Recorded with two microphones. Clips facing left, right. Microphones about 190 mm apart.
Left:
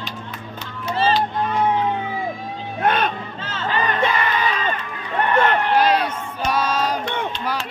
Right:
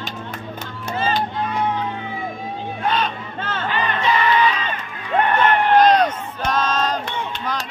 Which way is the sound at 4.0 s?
55° left (ahead or behind).